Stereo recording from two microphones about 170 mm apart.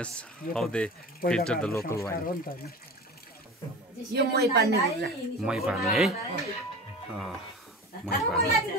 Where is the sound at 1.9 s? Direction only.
15° left (ahead or behind).